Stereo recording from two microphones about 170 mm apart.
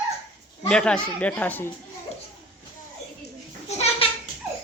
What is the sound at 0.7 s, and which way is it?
Speech, 5° left (ahead or behind).